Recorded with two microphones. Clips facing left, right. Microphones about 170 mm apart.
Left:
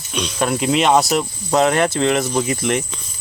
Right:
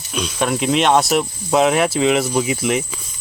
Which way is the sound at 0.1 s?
Centre (ahead or behind).